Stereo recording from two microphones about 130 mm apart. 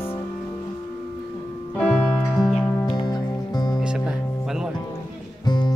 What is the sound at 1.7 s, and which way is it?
Music, 5° left (ahead or behind).